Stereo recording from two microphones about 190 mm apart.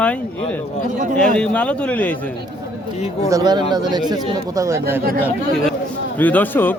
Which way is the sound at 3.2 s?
20° right (ahead or behind).